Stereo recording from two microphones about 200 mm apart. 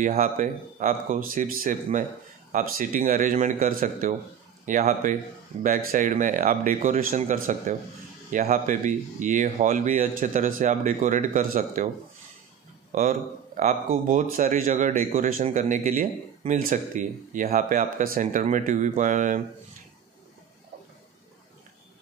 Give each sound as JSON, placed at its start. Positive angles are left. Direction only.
{"t": 0.0, "sound": "speech", "side_deg": -40}
{"t": 12.9, "sound": "speech", "side_deg": -40}
{"t": 14.3, "sound": "speech", "side_deg": -40}